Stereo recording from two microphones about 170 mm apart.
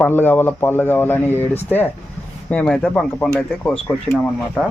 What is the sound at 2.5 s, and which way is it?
Speech, 5° left (ahead or behind).